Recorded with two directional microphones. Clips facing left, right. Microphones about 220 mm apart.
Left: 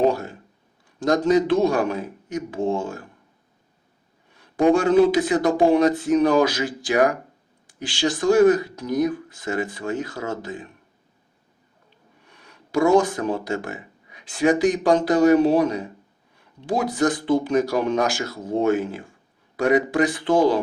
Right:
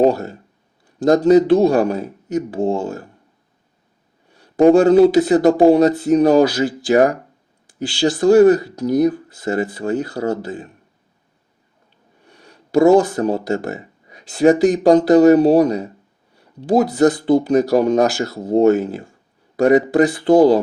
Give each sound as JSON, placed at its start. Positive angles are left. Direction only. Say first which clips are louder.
{"t": 0.0, "sound": "speech", "louder": "right 5 dB", "side_deg": -40}
{"t": 4.4, "sound": "speech", "louder": "right 7 dB", "side_deg": -40}
{"t": 12.2, "sound": "speech", "louder": "right 6 dB", "side_deg": -35}